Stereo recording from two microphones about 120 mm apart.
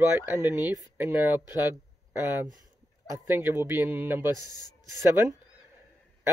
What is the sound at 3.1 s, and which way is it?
Speech, 20° right (ahead or behind).